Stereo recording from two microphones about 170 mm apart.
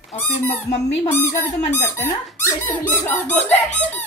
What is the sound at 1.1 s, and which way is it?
Squeak, 15° left (ahead or behind).